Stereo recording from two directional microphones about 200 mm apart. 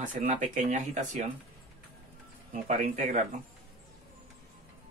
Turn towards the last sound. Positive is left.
turn(degrees=-35)  # may be behind; listen again after turning